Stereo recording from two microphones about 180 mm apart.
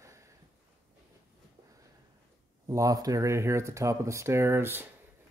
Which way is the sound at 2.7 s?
20° right (ahead or behind).